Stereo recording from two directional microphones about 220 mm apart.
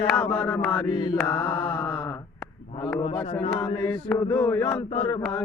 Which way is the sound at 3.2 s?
25° left (ahead or behind).